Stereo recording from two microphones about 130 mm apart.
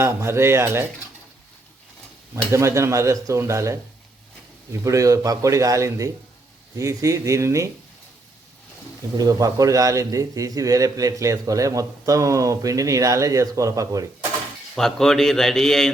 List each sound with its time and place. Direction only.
0.0 s a man's voice: 20° right (ahead or behind)
2.3 s a man's voice: 20° right (ahead or behind)
9.1 s a man's voice: 30° right (ahead or behind)
14.8 s a man's voice: 5° left (ahead or behind)